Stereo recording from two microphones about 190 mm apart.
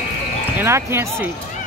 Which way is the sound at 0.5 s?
10° right (ahead or behind).